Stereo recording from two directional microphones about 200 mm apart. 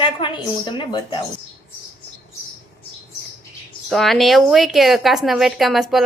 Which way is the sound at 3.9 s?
Centre (ahead or behind).